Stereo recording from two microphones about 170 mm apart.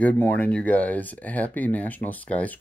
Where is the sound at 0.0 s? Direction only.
10° left (ahead or behind).